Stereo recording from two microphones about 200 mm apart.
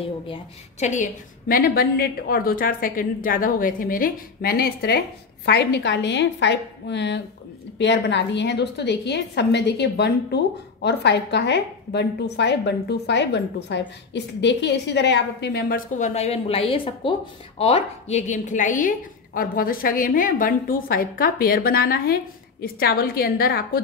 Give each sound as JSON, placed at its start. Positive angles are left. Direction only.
{"t": 0.0, "sound": "a woman's voice", "side_deg": 30}